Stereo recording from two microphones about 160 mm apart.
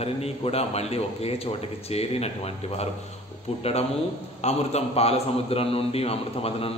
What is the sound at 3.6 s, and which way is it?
A man's voice, 40° left (ahead or behind).